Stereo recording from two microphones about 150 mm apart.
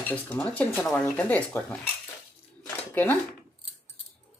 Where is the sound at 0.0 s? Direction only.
10° left (ahead or behind).